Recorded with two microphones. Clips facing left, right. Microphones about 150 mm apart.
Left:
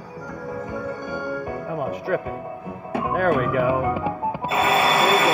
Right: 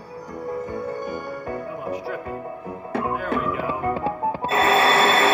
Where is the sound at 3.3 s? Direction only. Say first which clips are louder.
Left 5 dB; 55° left (ahead or behind).